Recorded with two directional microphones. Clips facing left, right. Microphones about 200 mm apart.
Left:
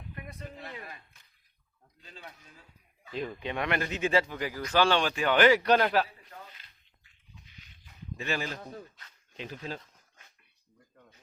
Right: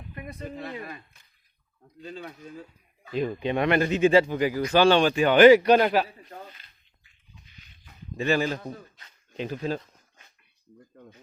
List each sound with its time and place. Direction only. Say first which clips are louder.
0.5 s speech: right 8 dB; 80° right
2.0 s speech: right 11 dB; 65° right (ahead or behind)
3.2 s speech: right 8 dB; 20° right (ahead or behind)
8.1 s a man's voice: right 9 dB; 35° right (ahead or behind)